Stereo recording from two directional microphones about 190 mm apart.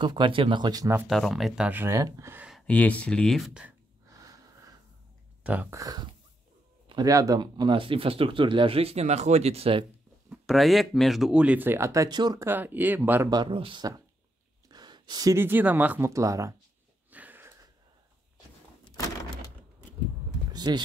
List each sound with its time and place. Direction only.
0.0 s speech: 25° right (ahead or behind)
1.0 s speech: centre (ahead or behind)
2.6 s speech: 5° left (ahead or behind)
4.1 s wheeze: 20° right (ahead or behind)
5.4 s speech: 10° right (ahead or behind); by 9.8 s 30° right (ahead or behind)
10.3 s speech: centre (ahead or behind)
13.3 s speech: 25° right (ahead or behind)
17.1 s a sound: 10° right (ahead or behind)
20.5 s a sound: 20° right (ahead or behind)